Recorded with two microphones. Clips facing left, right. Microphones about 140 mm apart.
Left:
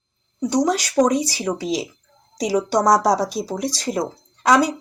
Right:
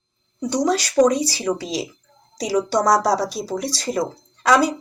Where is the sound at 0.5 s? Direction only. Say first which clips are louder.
Even; 15° left (ahead or behind).